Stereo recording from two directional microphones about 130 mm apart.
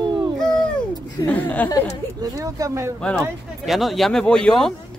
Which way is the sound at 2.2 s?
25° right (ahead or behind).